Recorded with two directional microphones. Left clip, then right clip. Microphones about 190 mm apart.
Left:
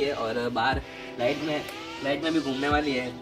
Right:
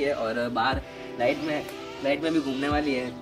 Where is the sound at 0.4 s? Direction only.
10° right (ahead or behind).